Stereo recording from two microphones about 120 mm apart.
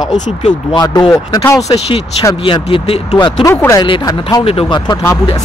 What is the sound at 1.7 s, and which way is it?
Speech, 55° left (ahead or behind).